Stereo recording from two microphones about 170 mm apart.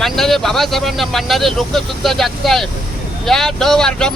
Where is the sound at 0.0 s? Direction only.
Centre (ahead or behind).